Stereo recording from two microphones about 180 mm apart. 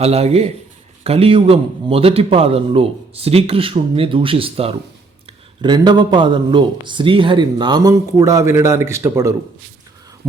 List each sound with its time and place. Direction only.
0.0 s a man's voice: 35° right (ahead or behind); by 9.3 s 15° right (ahead or behind)